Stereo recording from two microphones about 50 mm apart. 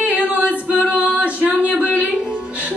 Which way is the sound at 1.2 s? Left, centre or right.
Right.